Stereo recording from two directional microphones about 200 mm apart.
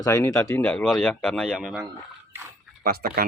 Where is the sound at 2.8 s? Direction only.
50° right (ahead or behind).